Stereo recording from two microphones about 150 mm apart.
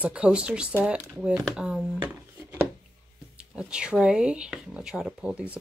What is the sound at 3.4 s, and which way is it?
Speech, 5° right (ahead or behind).